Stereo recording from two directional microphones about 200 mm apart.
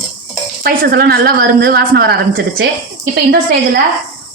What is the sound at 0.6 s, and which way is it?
Speech, 50° right (ahead or behind).